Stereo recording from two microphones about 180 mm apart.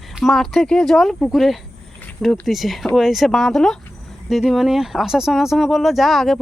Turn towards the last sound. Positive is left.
turn(degrees=0)  # may be behind; listen again after turning